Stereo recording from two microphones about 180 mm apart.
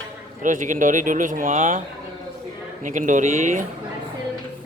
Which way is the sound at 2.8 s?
45° right (ahead or behind).